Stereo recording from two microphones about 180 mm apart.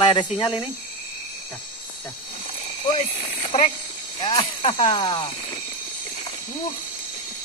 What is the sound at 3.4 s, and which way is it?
Snake, 30° left (ahead or behind).